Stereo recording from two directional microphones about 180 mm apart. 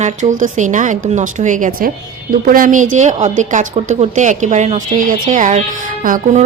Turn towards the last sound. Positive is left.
turn(degrees=-45)  # may be behind; listen again after turning